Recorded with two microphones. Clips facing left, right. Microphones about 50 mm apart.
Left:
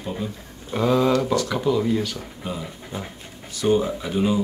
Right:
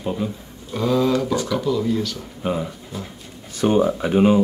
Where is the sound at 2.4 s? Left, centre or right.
Right.